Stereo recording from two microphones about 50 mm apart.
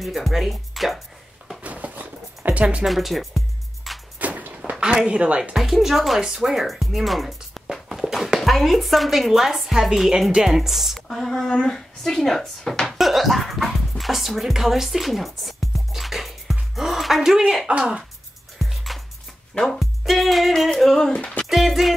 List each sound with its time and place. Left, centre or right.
0.0 s speech: centre
1.6 s zipper: right
2.8 s music: centre
4.2 s walk: right
4.7 s speech: centre
5.4 s speech: centre
7.5 s music: centre
8.4 s speech: centre
11.4 s speech: centre
12.8 s music: centre
17.5 s speech: centre
18.6 s music: centre
20.8 s speech: centre
21.5 s speech: centre